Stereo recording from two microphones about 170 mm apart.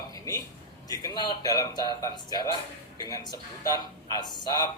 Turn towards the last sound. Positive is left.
turn(degrees=25)  # may be behind; listen again after turning